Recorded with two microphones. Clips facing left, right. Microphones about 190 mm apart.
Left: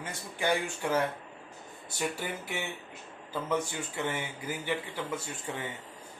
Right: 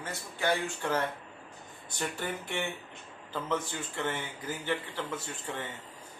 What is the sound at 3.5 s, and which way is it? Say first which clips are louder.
Speech: left 2 dB; 10° left (ahead or behind).